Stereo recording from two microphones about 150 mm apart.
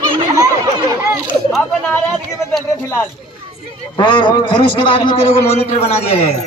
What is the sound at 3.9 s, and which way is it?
A man's voice, 30° left (ahead or behind).